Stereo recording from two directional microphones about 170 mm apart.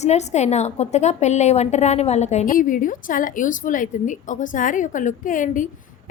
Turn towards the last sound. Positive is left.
turn(degrees=50)  # may be behind; listen again after turning